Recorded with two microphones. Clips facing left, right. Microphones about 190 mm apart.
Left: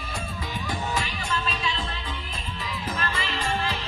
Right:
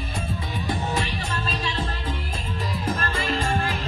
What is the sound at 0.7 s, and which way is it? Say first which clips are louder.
Music: right 4 dB; 35° right (ahead or behind).